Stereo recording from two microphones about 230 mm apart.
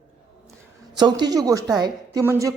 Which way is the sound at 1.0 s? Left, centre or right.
Centre.